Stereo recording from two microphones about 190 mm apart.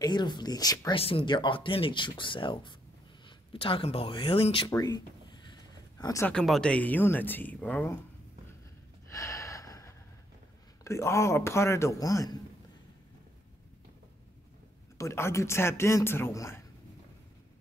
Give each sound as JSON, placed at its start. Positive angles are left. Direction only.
{"t": 0.0, "sound": "speech", "side_deg": 20}
{"t": 4.7, "sound": "a sound", "side_deg": 20}
{"t": 6.3, "sound": "speech", "side_deg": 0}
{"t": 9.1, "sound": "gasp", "side_deg": 15}
{"t": 10.8, "sound": "speech", "side_deg": 15}
{"t": 15.0, "sound": "speech", "side_deg": 15}